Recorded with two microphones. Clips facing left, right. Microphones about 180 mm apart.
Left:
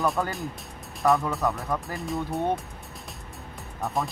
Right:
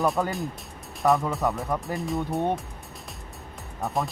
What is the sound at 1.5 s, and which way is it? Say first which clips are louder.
Speech: right 2 dB; centre (ahead or behind).